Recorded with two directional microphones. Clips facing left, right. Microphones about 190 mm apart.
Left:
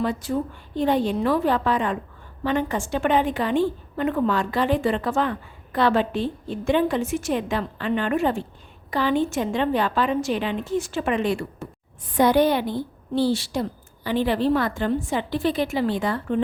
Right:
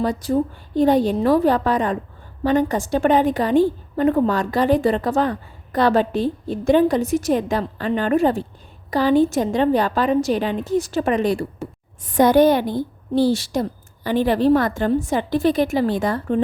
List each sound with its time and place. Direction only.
0.0 s a woman's voice: 35° right (ahead or behind)